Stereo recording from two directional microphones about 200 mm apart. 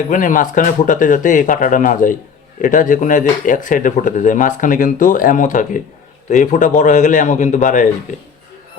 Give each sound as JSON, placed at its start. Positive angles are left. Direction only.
{"t": 0.1, "sound": "speech", "side_deg": 40}